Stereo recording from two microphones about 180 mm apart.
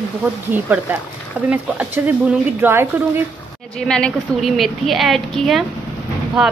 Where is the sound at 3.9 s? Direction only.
5° left (ahead or behind).